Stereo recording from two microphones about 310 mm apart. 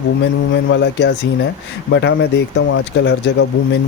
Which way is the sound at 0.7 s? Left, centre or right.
Left.